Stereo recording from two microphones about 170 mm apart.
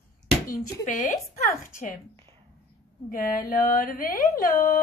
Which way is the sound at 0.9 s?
50° left (ahead or behind).